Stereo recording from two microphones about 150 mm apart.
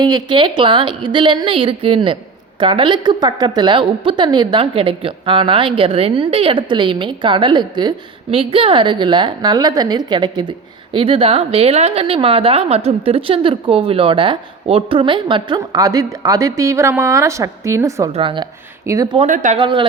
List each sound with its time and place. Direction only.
0.0 s a woman's voice: 30° right (ahead or behind)
18.1 s a woman's voice: 35° right (ahead or behind)
18.9 s speech: 20° right (ahead or behind)
19.3 s speech: 55° right (ahead or behind)
19.5 s a woman's voice: 35° right (ahead or behind)